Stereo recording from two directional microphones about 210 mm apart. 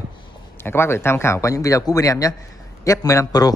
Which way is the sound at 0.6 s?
10° left (ahead or behind).